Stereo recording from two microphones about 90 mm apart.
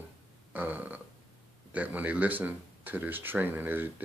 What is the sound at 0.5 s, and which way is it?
Burping, 20° right (ahead or behind).